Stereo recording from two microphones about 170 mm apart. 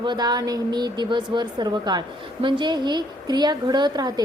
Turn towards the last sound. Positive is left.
turn(degrees=-25)  # may be behind; listen again after turning